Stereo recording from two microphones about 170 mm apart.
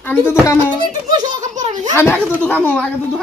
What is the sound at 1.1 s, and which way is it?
Baby laughter, 45° right (ahead or behind).